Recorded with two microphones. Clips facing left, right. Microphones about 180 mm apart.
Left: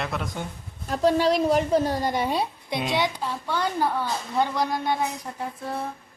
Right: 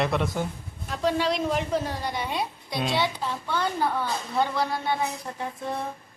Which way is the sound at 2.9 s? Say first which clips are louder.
Left 1 dB; 15° left (ahead or behind).